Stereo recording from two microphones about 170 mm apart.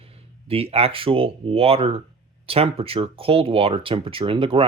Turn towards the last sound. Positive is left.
turn(degrees=-30)  # may be behind; listen again after turning